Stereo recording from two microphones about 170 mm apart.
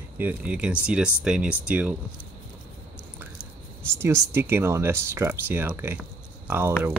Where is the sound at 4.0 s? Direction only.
15° right (ahead or behind).